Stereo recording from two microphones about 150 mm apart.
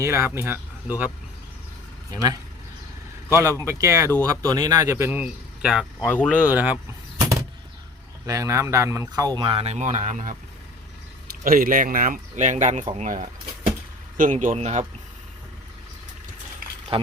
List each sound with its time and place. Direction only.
0.0 s speech: 15° right (ahead or behind)
3.3 s speech: 20° right (ahead or behind)
6.1 s speech: 10° left (ahead or behind)
6.4 s speech: 10° right (ahead or behind)
8.3 s speech: 20° right (ahead or behind); by 10.3 s 55° right (ahead or behind)
11.4 s speech: 65° right (ahead or behind)
12.8 s speech: 40° right (ahead or behind)
14.2 s speech: 60° right (ahead or behind)
16.9 s speech: 40° right (ahead or behind)